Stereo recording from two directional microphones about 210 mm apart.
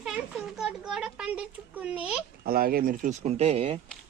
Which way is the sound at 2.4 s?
45° right (ahead or behind).